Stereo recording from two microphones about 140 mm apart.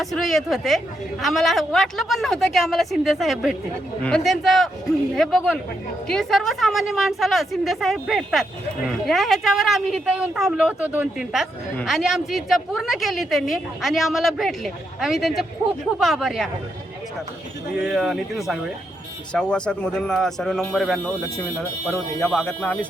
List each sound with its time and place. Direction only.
0.0 s a woman's voice: centre (ahead or behind)
17.8 s a woman's voice: centre (ahead or behind)
21.3 s speech: 15° left (ahead or behind)
22.2 s a woman's voice: 5° left (ahead or behind)